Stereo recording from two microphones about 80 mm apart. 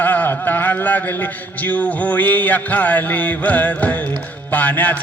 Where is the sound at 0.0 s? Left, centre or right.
Left.